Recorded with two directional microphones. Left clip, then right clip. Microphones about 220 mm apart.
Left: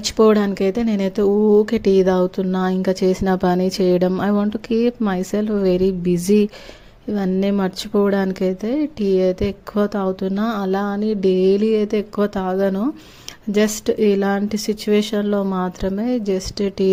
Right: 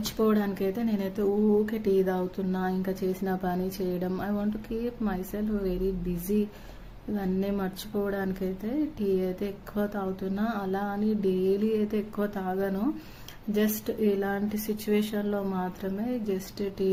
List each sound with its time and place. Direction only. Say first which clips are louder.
0.0 s speech: left 12 dB; 40° left (ahead or behind)
7.1 s speech: left 10 dB; 40° left (ahead or behind)